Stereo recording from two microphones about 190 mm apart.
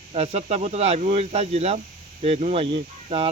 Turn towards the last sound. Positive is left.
turn(degrees=-30)  # may be behind; listen again after turning